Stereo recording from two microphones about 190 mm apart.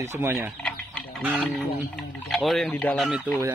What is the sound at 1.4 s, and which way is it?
Speech, centre (ahead or behind).